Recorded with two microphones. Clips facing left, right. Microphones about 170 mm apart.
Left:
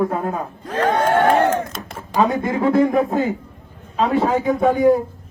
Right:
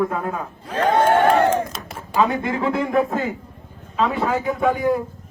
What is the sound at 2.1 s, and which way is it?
A man's voice, 40° left (ahead or behind).